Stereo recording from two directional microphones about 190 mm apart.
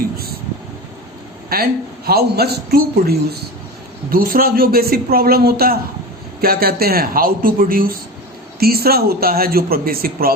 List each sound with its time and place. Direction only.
1.5 s a man's voice: 50° right (ahead or behind)